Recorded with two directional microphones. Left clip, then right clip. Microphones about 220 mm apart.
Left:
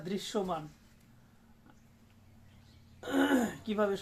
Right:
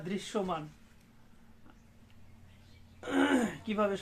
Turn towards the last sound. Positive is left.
turn(degrees=0)  # may be behind; listen again after turning